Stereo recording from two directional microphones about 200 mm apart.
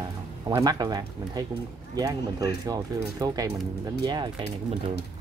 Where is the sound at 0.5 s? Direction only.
20° right (ahead or behind).